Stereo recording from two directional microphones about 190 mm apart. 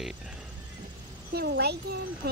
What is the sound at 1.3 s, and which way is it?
Speech, 60° right (ahead or behind).